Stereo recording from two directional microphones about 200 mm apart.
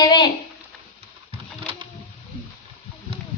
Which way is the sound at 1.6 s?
25° right (ahead or behind).